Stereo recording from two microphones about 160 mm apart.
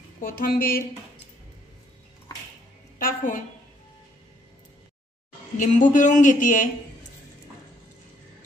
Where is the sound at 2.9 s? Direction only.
60° left (ahead or behind).